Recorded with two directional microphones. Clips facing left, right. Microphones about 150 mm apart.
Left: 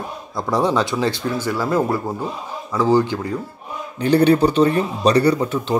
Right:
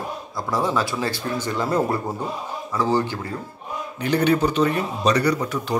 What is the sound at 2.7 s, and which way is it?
Speech, 15° left (ahead or behind).